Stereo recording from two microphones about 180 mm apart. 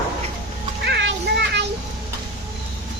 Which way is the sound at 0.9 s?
70° right (ahead or behind).